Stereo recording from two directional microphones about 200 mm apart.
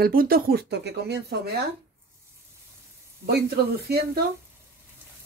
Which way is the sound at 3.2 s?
50° right (ahead or behind).